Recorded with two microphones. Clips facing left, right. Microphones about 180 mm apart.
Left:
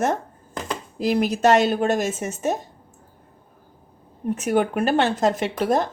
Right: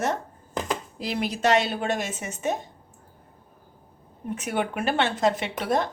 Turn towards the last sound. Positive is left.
turn(degrees=45)  # may be behind; listen again after turning